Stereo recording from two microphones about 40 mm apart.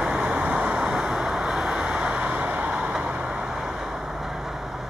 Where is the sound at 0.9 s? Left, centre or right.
Centre.